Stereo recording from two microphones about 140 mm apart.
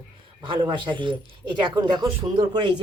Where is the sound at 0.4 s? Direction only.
35° right (ahead or behind).